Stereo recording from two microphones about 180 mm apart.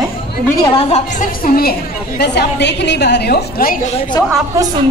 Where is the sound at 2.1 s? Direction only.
70° left (ahead or behind).